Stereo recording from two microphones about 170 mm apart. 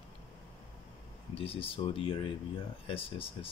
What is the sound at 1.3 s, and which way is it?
Speech, 35° left (ahead or behind).